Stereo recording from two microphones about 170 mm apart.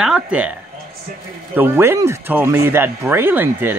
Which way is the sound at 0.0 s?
5° right (ahead or behind).